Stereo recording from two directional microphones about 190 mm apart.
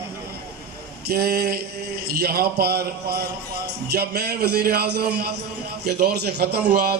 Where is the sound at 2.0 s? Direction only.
55° right (ahead or behind).